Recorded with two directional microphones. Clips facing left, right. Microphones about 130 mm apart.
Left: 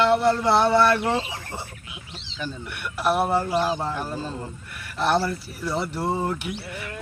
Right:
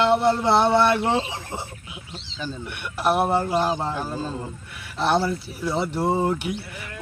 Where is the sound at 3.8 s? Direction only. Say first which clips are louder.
Right 1 dB; centre (ahead or behind).